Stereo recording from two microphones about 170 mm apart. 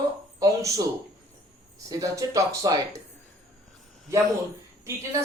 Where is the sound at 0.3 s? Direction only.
20° right (ahead or behind).